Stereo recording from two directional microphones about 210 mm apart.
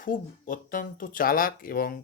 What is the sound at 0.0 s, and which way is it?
Speech, 40° left (ahead or behind).